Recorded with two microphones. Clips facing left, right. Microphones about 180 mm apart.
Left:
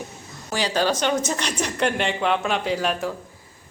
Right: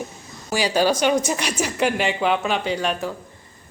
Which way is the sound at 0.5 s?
10° right (ahead or behind).